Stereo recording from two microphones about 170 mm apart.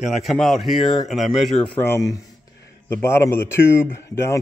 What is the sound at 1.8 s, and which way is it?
Speech, 15° left (ahead or behind).